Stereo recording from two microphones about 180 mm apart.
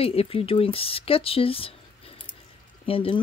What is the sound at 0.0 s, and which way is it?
Speech, 30° left (ahead or behind).